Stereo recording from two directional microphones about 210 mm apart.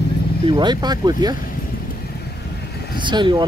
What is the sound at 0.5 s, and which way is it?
Speech, 20° right (ahead or behind).